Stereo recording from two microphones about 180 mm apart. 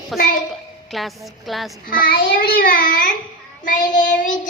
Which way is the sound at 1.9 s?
55° left (ahead or behind).